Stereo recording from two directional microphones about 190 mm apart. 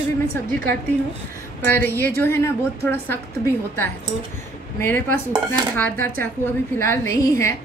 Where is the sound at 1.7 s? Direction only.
10° left (ahead or behind).